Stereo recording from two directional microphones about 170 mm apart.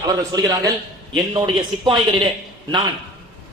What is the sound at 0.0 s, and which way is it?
Speech, 20° right (ahead or behind).